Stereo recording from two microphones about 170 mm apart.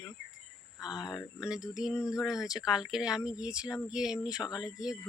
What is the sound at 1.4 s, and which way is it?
Speech, 5° right (ahead or behind).